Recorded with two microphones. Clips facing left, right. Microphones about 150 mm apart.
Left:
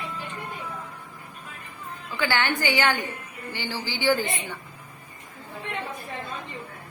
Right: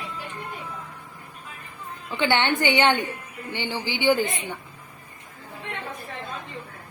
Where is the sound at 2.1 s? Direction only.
25° right (ahead or behind).